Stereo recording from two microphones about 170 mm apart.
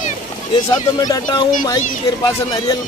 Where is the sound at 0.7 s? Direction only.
25° left (ahead or behind).